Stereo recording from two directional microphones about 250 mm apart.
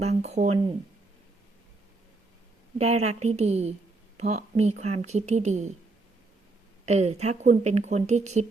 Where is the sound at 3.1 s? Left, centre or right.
Right.